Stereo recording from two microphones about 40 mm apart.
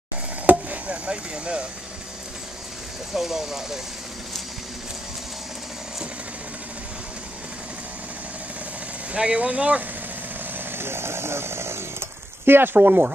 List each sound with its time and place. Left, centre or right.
0.5 s chop: right
3.1 s speech: centre
9.1 s speech: right
10.4 s speech: right
12.4 s speech: right
12.7 s speech: right